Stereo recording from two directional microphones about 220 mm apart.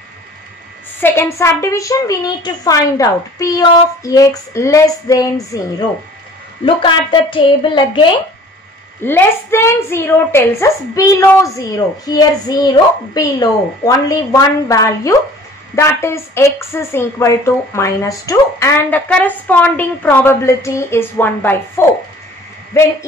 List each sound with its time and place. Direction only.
1.0 s a woman's voice: 10° left (ahead or behind)
6.6 s a woman's voice: 20° left (ahead or behind)
9.0 s a woman's voice: 10° left (ahead or behind)